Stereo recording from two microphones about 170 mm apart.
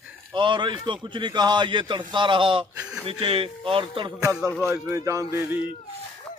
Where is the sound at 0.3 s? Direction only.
30° right (ahead or behind).